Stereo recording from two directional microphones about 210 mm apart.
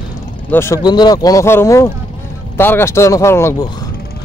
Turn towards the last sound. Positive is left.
turn(degrees=15)  # may be behind; listen again after turning